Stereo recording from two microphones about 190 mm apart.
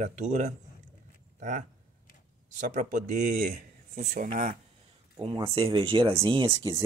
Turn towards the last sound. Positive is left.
turn(degrees=-20)  # may be behind; listen again after turning